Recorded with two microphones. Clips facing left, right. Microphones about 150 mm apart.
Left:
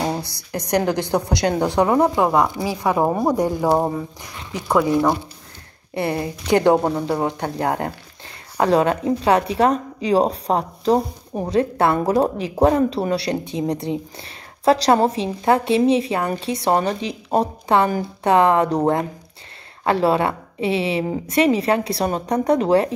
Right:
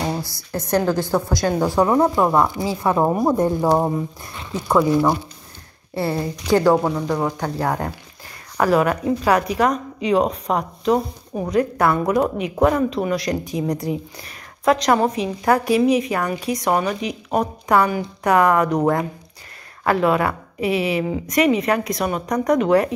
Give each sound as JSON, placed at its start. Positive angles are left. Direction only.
{"t": 0.5, "sound": "a woman's voice", "side_deg": 15}